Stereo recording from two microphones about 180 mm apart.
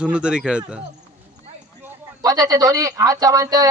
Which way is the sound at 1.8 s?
20° right (ahead or behind).